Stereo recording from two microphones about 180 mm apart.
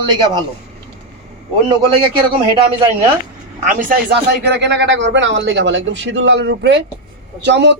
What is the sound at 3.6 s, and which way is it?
Speech, 45° right (ahead or behind).